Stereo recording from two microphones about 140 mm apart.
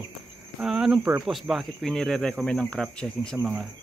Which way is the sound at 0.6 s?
5° right (ahead or behind).